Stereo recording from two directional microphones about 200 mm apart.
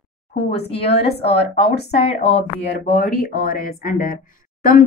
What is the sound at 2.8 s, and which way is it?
Speech, 45° left (ahead or behind).